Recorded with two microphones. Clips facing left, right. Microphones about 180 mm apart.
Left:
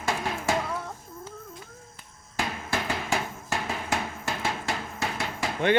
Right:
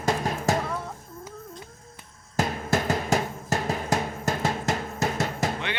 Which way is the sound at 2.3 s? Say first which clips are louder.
Right 5 dB; 40° right (ahead or behind).